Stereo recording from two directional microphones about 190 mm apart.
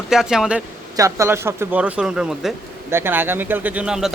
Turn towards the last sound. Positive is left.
turn(degrees=-5)  # may be behind; listen again after turning